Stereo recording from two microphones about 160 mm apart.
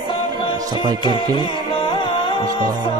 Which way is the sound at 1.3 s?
30° left (ahead or behind).